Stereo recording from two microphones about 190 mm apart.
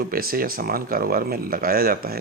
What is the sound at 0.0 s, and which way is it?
Speech, 50° right (ahead or behind).